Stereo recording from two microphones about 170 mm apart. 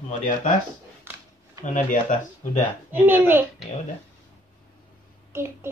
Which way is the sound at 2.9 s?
10° right (ahead or behind).